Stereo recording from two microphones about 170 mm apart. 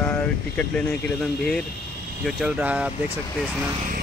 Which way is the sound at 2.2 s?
5° right (ahead or behind).